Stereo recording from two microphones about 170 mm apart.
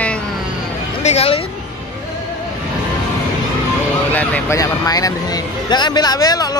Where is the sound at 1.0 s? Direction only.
35° left (ahead or behind).